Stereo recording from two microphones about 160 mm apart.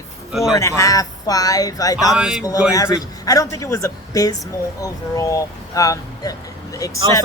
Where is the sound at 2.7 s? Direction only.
20° left (ahead or behind).